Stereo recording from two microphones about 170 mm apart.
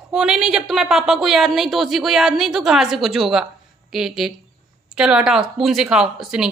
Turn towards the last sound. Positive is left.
turn(degrees=-5)  # may be behind; listen again after turning